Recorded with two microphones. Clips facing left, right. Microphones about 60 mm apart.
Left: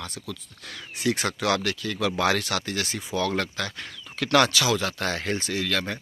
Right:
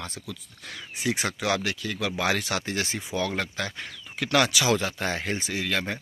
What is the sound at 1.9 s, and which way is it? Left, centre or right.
Speech, centre.